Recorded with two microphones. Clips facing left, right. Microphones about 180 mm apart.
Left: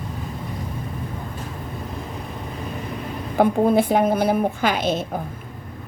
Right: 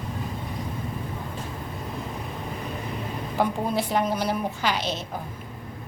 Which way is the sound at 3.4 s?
55° left (ahead or behind).